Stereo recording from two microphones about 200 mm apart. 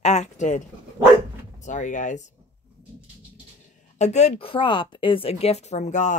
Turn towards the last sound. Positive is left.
turn(degrees=35)  # may be behind; listen again after turning